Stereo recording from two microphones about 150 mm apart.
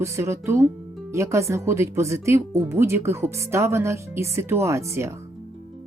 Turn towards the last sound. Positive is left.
turn(degrees=-20)  # may be behind; listen again after turning